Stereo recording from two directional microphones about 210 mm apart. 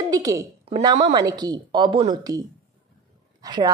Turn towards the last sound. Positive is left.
turn(degrees=-20)  # may be behind; listen again after turning